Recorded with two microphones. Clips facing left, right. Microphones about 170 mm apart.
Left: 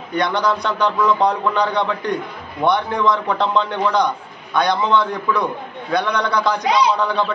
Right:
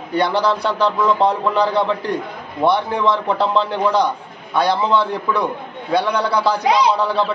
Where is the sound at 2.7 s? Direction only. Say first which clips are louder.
Even; 30° right (ahead or behind).